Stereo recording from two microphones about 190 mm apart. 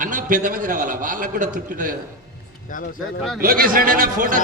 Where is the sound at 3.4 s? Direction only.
50° right (ahead or behind).